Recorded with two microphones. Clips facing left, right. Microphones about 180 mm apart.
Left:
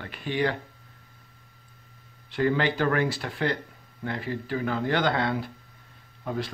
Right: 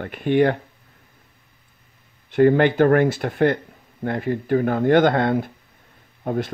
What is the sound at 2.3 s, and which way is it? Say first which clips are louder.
Speech: right 9 dB; 50° right (ahead or behind).